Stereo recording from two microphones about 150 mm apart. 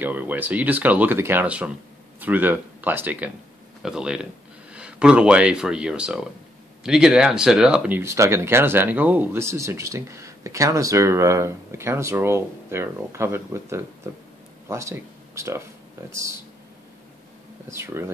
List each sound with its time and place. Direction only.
0.0 s speech: 10° right (ahead or behind)
8.0 s speech: 20° right (ahead or behind)
17.6 s speech: 20° right (ahead or behind)